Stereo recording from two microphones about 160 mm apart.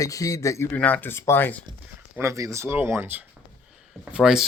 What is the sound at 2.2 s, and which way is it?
Speech, 20° right (ahead or behind).